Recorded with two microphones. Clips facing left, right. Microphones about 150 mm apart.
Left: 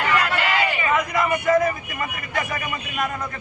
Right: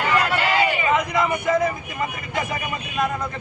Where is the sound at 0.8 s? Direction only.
20° right (ahead or behind).